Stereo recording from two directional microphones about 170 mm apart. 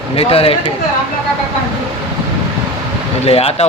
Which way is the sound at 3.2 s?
35° left (ahead or behind).